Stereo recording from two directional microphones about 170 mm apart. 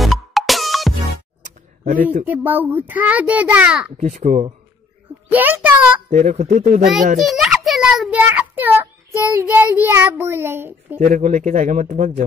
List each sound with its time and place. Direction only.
0.0 s music: centre (ahead or behind)
2.2 s a child's voice: 10° right (ahead or behind)
4.0 s speech: 50° right (ahead or behind)
5.3 s a child's voice: 10° right (ahead or behind)
6.0 s speech: 45° right (ahead or behind)
7.2 s a child's voice: centre (ahead or behind)
11.0 s speech: 50° right (ahead or behind)